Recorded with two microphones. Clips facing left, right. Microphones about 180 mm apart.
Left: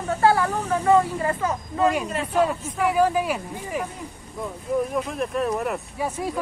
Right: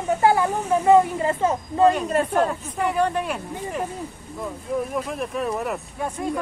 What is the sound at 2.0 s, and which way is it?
Speech, 45° right (ahead or behind).